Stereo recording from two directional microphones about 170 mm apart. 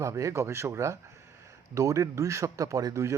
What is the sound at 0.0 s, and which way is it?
Speech, 20° right (ahead or behind).